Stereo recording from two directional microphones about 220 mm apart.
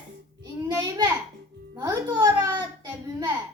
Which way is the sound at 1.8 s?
20° right (ahead or behind).